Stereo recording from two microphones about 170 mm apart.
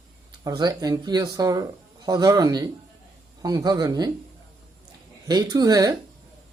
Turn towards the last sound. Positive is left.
turn(degrees=-20)  # may be behind; listen again after turning